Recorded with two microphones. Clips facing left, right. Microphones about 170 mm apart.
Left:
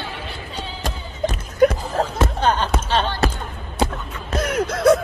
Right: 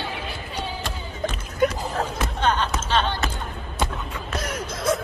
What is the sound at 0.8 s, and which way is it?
Music, 45° left (ahead or behind).